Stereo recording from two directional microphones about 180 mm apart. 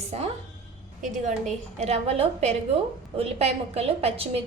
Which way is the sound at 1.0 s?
40° right (ahead or behind).